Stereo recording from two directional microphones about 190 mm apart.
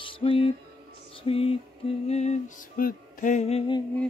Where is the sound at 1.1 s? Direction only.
30° left (ahead or behind).